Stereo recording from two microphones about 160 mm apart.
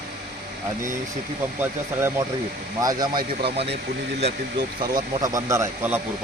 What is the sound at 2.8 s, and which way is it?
Speech, 25° right (ahead or behind).